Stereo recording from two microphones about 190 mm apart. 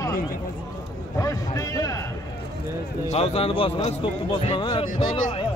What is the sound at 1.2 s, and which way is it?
Speech, 15° left (ahead or behind).